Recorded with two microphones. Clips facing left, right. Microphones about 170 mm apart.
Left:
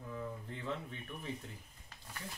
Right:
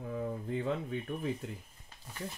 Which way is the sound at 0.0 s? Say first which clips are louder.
Right 6 dB; 50° right (ahead or behind).